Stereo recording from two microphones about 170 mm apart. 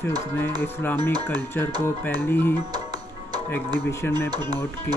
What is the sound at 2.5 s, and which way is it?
Music, 25° right (ahead or behind).